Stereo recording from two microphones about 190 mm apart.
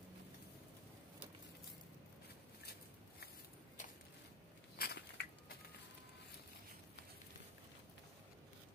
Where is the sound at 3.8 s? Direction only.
40° left (ahead or behind).